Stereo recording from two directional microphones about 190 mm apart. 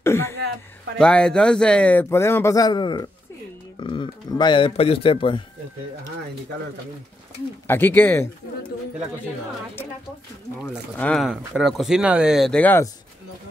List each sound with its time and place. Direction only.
0.0 s throat clearing: 15° left (ahead or behind)
0.9 s a man's voice: 5° left (ahead or behind); by 5.4 s 25° left (ahead or behind)
7.6 s a man's voice: 10° left (ahead or behind)
11.0 s speech: 5° left (ahead or behind)